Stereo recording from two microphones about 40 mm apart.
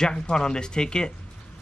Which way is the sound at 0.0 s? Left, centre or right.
Centre.